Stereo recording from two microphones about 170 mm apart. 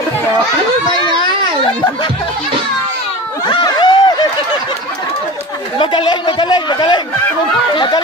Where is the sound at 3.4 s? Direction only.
25° left (ahead or behind).